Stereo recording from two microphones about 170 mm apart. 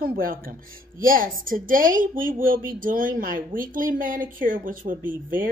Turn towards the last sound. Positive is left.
turn(degrees=-55)  # may be behind; listen again after turning